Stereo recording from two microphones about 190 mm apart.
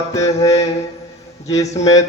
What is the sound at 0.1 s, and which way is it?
Speech, 15° left (ahead or behind).